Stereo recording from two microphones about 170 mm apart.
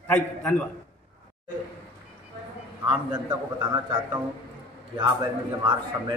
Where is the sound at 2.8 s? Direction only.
25° right (ahead or behind).